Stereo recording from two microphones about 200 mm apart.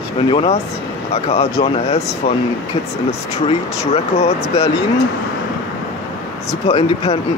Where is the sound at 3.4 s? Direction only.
30° left (ahead or behind).